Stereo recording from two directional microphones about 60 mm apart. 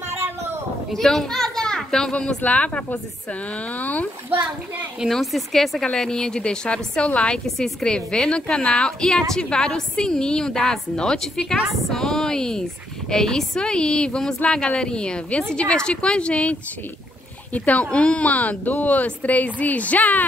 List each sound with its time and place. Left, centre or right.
0.1 s a sound: right
0.9 s speech: centre
2.2 s a woman's voice: left
5.1 s a woman's voice: centre
7.4 s a woman's voice: centre; by 20.2 s left